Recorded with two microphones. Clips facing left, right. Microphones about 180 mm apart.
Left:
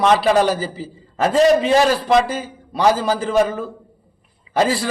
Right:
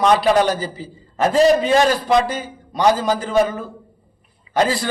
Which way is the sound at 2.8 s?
Centre (ahead or behind).